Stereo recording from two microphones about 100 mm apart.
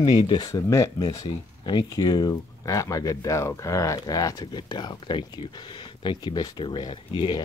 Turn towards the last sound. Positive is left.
turn(degrees=45)  # may be behind; listen again after turning